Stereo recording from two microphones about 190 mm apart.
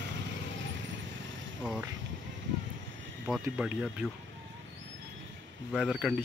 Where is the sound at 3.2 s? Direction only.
Centre (ahead or behind).